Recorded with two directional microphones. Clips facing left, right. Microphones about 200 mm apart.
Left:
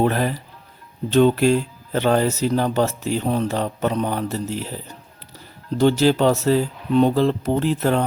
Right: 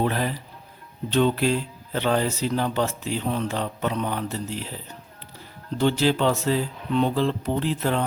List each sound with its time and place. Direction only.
0.0 s speech: 50° left (ahead or behind)